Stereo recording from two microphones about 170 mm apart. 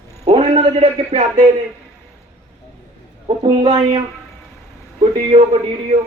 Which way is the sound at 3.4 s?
30° right (ahead or behind).